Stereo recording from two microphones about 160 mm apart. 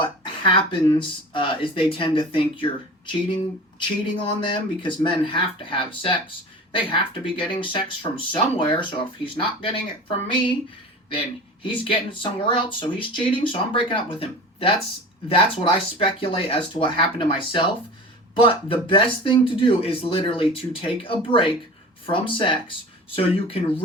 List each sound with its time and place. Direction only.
0.0 s speech: 30° left (ahead or behind)